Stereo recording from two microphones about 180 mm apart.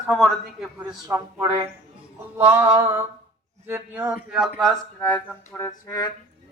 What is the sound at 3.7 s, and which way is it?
Speech, 10° right (ahead or behind).